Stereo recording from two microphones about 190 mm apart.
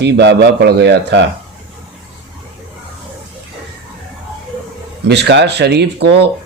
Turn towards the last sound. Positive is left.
turn(degrees=-60)  # may be behind; listen again after turning